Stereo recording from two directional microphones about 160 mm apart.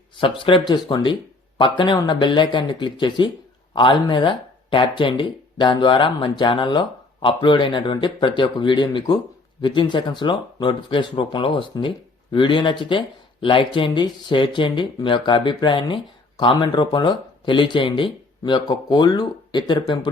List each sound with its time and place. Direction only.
0.2 s speech: 30° left (ahead or behind)